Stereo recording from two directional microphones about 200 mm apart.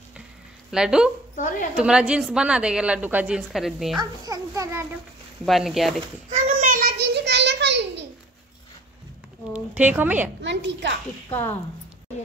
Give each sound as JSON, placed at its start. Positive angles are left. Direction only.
{"t": 0.7, "sound": "a woman's voice", "side_deg": -5}
{"t": 4.0, "sound": "a child's voice", "side_deg": -20}
{"t": 5.4, "sound": "a woman's voice", "side_deg": 0}
{"t": 6.3, "sound": "a sound", "side_deg": -35}
{"t": 9.5, "sound": "speech", "side_deg": -10}
{"t": 10.4, "sound": "a woman's voice", "side_deg": -65}